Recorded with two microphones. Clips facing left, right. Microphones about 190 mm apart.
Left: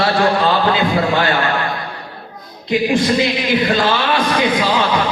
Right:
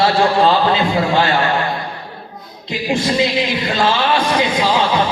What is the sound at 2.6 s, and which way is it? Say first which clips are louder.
Speech: left 4 dB; 25° right (ahead or behind).